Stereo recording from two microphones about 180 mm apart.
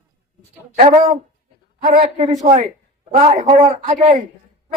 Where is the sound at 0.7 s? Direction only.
45° right (ahead or behind).